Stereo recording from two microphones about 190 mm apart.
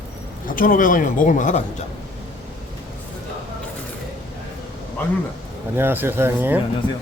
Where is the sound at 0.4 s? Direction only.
45° left (ahead or behind).